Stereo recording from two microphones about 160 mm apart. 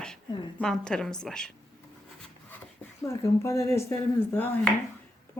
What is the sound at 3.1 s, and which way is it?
Speech, 15° left (ahead or behind).